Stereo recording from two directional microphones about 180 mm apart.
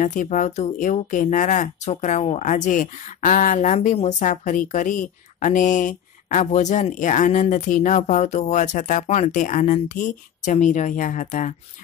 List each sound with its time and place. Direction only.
0.0 s speech: 45° left (ahead or behind)